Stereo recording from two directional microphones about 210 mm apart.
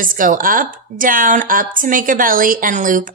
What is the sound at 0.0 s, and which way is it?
A woman's voice, 40° right (ahead or behind).